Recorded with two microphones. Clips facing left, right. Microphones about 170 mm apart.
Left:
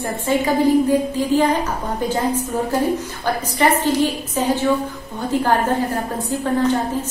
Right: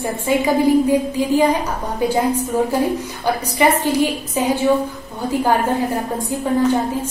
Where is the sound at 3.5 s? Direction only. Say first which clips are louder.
Right 1 dB; 10° right (ahead or behind).